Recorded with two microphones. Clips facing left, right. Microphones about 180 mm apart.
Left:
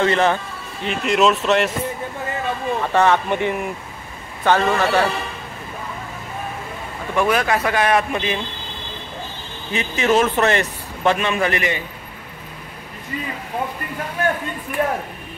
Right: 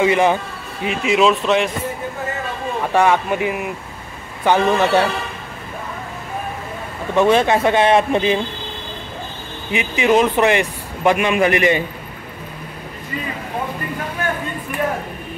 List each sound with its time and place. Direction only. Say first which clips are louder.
0.0 s speech: right 2 dB; 10° right (ahead or behind)
2.9 s speech: right 1 dB; 10° right (ahead or behind)
4.5 s speech: right 2 dB; 15° right (ahead or behind)
7.2 s speech: right 5 dB; 25° right (ahead or behind)
9.7 s speech: right 2 dB; 15° right (ahead or behind)